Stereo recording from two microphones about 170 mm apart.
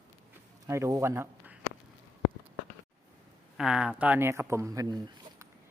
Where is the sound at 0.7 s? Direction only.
15° right (ahead or behind).